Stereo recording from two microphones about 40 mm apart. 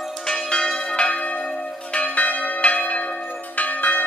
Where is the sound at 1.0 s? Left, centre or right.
Left.